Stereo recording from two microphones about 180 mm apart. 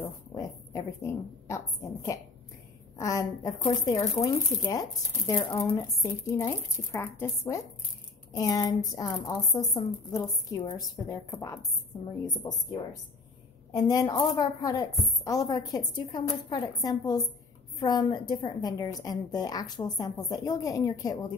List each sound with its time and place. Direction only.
0.0 s a woman's voice: 20° left (ahead or behind)
3.0 s a woman's voice: 20° left (ahead or behind)
13.7 s a woman's voice: 20° left (ahead or behind)